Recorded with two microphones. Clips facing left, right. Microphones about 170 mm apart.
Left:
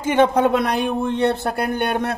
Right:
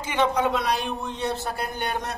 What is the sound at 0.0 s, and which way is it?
A man's voice, 50° left (ahead or behind).